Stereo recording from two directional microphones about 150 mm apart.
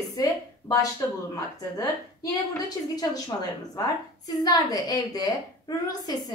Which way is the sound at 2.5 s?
25° left (ahead or behind).